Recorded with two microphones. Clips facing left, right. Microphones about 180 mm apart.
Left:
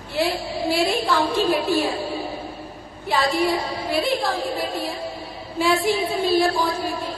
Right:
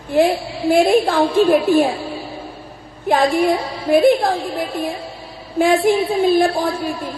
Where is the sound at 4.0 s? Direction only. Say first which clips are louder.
Right 6 dB; 50° right (ahead or behind).